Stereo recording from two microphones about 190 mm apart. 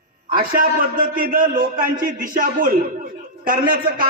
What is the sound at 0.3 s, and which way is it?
A man's voice, 50° right (ahead or behind).